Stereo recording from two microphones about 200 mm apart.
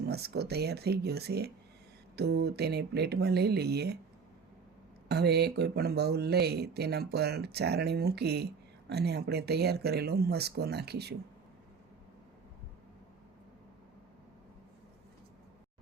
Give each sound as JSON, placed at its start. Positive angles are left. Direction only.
{"t": 0.0, "sound": "speech", "side_deg": -55}
{"t": 5.0, "sound": "speech", "side_deg": -55}